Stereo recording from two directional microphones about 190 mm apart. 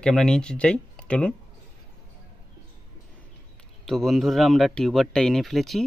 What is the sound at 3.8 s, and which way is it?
Speech, centre (ahead or behind).